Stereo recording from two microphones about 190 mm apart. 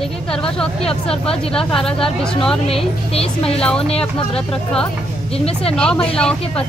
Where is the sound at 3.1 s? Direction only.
30° left (ahead or behind).